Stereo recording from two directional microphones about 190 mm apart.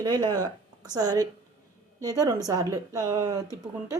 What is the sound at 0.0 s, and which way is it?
Speech, 20° right (ahead or behind).